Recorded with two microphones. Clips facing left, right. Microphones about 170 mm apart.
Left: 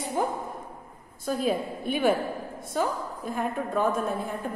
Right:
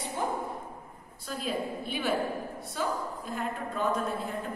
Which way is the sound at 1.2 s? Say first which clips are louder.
Left 6 dB; 50° left (ahead or behind).